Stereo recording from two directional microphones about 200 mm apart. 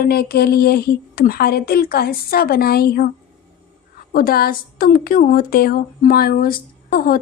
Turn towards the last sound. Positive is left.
turn(degrees=45)  # may be behind; listen again after turning